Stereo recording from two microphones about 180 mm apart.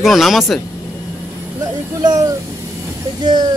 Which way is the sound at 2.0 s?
20° right (ahead or behind).